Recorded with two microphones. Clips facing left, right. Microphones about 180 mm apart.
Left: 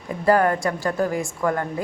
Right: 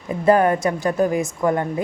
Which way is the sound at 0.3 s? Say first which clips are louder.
Right 3 dB; 20° right (ahead or behind).